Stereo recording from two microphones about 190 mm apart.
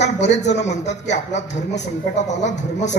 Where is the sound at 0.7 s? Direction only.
40° left (ahead or behind).